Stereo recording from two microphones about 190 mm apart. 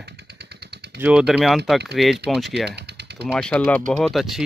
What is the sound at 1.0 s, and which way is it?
Speech, 5° right (ahead or behind).